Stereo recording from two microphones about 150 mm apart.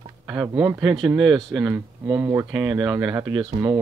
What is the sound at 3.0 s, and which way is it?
Speech, 10° right (ahead or behind).